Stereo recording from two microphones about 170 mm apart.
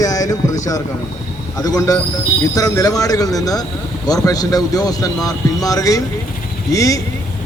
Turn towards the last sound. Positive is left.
turn(degrees=20)  # may be behind; listen again after turning